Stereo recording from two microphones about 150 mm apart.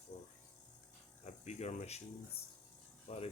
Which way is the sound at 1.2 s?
50° left (ahead or behind).